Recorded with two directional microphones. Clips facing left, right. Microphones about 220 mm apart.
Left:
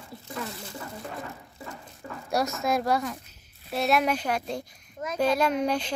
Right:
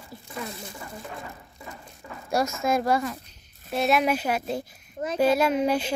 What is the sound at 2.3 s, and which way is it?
A child's voice, centre (ahead or behind).